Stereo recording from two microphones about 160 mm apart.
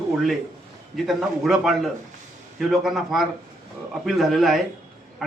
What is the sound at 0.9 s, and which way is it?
A man's voice, centre (ahead or behind).